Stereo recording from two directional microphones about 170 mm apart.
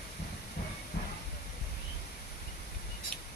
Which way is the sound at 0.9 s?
80° left.